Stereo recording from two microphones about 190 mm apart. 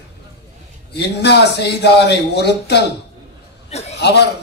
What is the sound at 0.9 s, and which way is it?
A man's voice, 65° left (ahead or behind).